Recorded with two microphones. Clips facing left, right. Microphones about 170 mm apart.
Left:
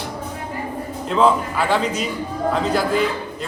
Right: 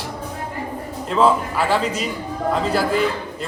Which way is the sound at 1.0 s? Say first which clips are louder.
Even; centre (ahead or behind).